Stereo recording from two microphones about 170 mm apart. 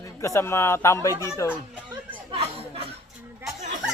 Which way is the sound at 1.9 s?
35° right (ahead or behind).